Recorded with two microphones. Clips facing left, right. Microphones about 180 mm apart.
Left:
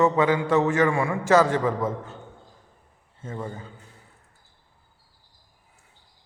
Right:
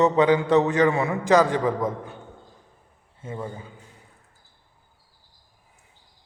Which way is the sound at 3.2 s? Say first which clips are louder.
Even; 10° right (ahead or behind).